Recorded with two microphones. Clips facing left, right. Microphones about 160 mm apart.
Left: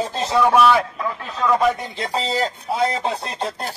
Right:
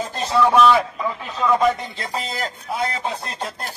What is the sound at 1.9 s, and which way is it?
Speech, 30° left (ahead or behind).